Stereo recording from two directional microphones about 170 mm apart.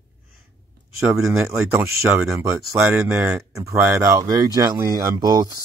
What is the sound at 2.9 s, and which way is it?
Speech, 5° right (ahead or behind).